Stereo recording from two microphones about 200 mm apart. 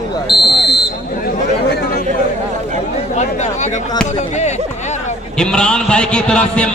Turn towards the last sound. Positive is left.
turn(degrees=5)  # may be behind; listen again after turning